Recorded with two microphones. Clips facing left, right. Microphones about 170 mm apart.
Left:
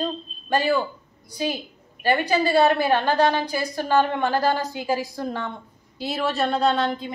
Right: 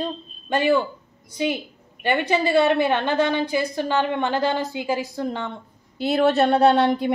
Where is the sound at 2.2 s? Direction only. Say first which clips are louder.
Right 1 dB; 20° right (ahead or behind).